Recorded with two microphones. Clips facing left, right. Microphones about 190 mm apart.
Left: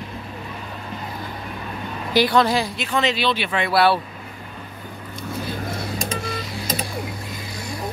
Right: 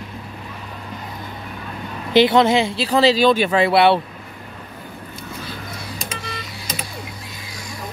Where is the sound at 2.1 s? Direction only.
25° right (ahead or behind); by 3.7 s 40° right (ahead or behind).